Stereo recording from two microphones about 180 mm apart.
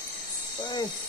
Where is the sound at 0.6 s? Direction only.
25° left (ahead or behind).